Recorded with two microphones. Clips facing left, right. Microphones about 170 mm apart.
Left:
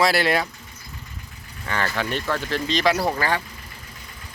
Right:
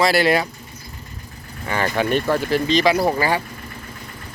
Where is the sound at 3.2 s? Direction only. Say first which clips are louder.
Right 4 dB; 10° right (ahead or behind).